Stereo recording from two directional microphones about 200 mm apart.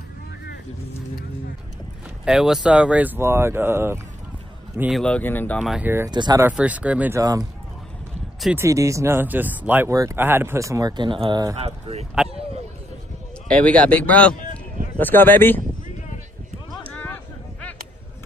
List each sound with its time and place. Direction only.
2.2 s speech: 5° right (ahead or behind)
5.0 s speech: 10° left (ahead or behind); by 6.1 s 10° right (ahead or behind)
6.1 s speech: 20° right (ahead or behind)
6.4 s speech: 5° right (ahead or behind)
8.5 s speech: 15° right (ahead or behind); by 12.1 s 30° right (ahead or behind)
13.5 s speech: 5° left (ahead or behind)
16.9 s a sound: 5° left (ahead or behind)